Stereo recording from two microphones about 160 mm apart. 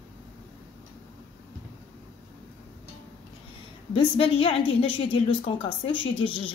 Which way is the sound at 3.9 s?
35° left (ahead or behind).